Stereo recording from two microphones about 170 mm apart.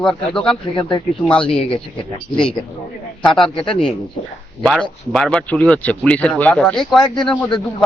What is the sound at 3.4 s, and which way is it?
Speech, 30° left (ahead or behind).